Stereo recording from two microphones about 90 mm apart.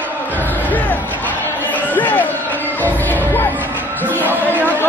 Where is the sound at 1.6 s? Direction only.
20° left (ahead or behind).